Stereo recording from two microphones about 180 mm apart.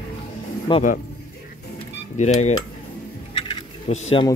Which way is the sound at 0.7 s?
25° left (ahead or behind).